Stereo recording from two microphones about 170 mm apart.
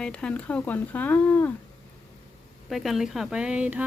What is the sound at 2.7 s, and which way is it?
Speech, centre (ahead or behind).